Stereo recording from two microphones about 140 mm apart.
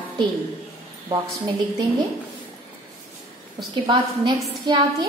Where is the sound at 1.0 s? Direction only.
35° right (ahead or behind).